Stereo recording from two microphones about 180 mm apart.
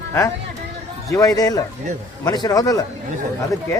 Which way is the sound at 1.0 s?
20° left (ahead or behind).